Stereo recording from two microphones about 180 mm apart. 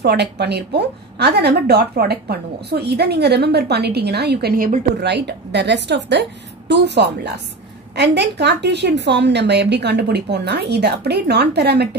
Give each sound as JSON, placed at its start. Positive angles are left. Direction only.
{"t": 0.0, "sound": "a woman's voice", "side_deg": -65}